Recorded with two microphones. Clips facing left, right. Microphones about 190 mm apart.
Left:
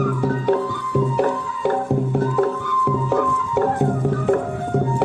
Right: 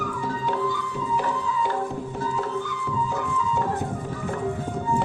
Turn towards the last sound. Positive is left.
turn(degrees=60)  # may be behind; listen again after turning